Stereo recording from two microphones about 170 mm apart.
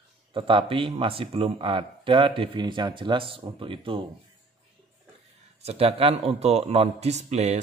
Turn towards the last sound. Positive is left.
turn(degrees=-40)  # may be behind; listen again after turning